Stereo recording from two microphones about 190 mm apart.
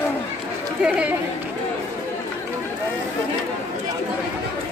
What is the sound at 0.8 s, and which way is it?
Chatter, 5° right (ahead or behind).